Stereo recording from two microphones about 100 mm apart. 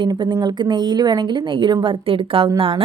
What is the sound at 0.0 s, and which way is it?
A woman's voice, 50° right (ahead or behind).